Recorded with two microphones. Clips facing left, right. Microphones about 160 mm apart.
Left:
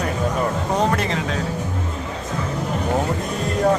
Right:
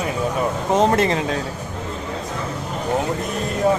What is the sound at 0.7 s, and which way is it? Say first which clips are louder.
Speech: right 5 dB; 25° right (ahead or behind).